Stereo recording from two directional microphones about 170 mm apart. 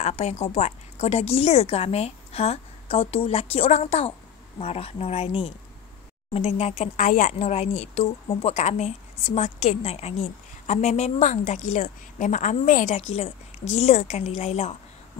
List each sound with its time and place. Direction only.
0.0 s a woman's voice: 40° left (ahead or behind)
7.0 s a woman's voice: 50° left (ahead or behind)
12.9 s a woman's voice: 35° left (ahead or behind)